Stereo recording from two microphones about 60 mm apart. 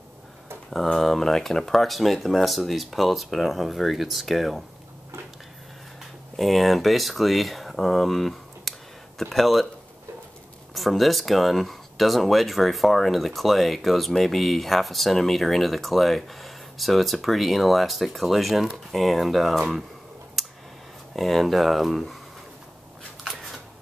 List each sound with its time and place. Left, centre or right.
0.9 s speech: centre
6.3 s speech: centre
10.7 s speech: centre
21.1 s speech: centre
23.2 s shuffling cards: centre